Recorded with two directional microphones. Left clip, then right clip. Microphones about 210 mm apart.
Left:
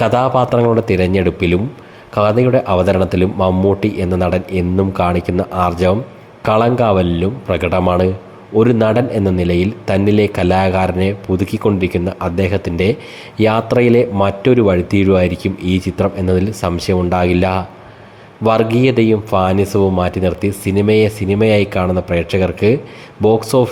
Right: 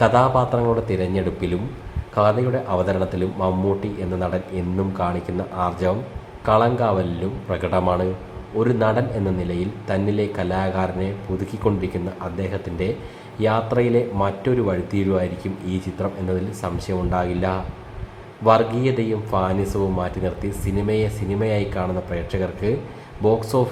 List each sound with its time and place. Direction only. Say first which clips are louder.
0.0 s a man's voice: left 3 dB; 35° left (ahead or behind)